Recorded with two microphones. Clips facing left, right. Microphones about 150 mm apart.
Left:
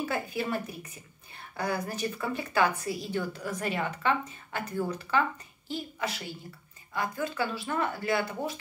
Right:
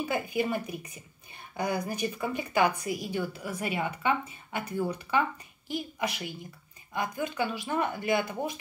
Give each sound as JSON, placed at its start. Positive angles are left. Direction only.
{"t": 0.0, "sound": "a woman's voice", "side_deg": -15}